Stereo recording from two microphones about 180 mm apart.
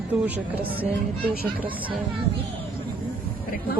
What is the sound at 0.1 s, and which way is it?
Speech, 10° right (ahead or behind).